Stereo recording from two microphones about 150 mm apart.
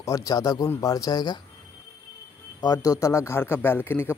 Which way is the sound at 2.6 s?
25° left (ahead or behind).